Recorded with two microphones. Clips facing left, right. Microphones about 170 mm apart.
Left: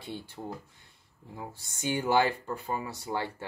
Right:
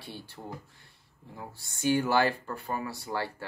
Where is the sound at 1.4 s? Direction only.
15° left (ahead or behind).